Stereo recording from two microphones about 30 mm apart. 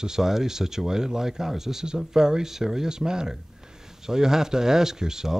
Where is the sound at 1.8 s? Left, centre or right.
Right.